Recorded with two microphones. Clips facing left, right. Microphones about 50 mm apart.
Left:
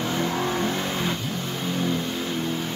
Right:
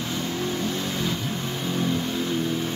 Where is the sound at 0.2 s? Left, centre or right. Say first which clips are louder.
Left 3 dB; left.